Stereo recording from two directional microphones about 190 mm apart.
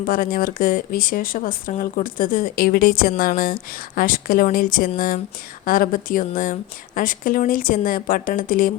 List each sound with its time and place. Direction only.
0.0 s speech: 50° left (ahead or behind)